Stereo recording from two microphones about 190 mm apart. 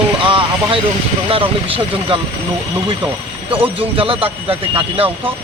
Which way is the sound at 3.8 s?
30° right (ahead or behind).